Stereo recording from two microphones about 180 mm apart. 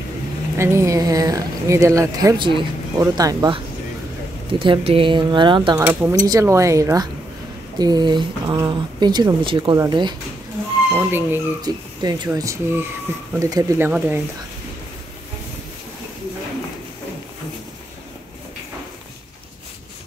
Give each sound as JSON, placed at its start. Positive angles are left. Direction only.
{"t": 0.6, "sound": "speech", "side_deg": -15}
{"t": 5.9, "sound": "speech", "side_deg": -15}
{"t": 10.9, "sound": "speech", "side_deg": -10}
{"t": 12.0, "sound": "speech", "side_deg": -20}